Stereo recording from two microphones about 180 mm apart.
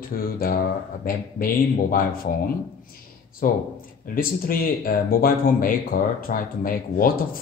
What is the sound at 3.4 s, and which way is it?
Speech, 50° left (ahead or behind).